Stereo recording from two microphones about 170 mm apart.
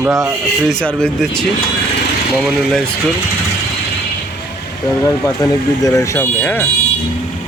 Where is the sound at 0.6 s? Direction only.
5° left (ahead or behind).